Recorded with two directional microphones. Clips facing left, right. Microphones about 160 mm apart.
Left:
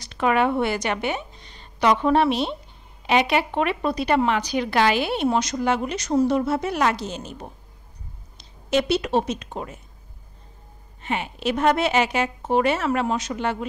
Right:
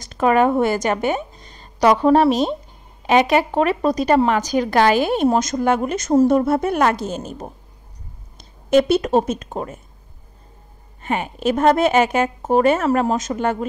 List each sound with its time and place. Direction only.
0.0 s a woman's voice: 40° right (ahead or behind)
11.0 s speech: 45° right (ahead or behind)